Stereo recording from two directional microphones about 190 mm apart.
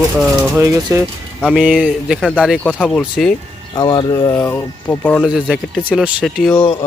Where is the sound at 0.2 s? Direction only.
5° right (ahead or behind).